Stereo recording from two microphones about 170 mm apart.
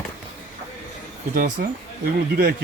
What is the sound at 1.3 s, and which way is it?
Speech, 55° right (ahead or behind).